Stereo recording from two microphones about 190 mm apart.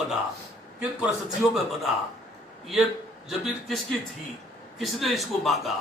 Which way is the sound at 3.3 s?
Centre (ahead or behind).